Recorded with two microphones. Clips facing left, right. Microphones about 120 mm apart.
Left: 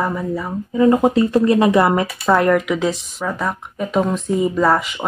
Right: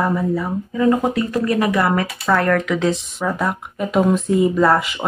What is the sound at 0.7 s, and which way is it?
Speech, 25° left (ahead or behind).